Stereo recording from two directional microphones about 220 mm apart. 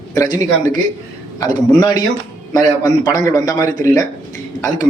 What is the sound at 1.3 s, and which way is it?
A man's voice, 15° left (ahead or behind).